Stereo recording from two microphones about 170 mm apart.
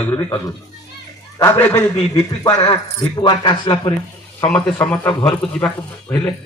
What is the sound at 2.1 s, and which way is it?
Speech, 30° left (ahead or behind).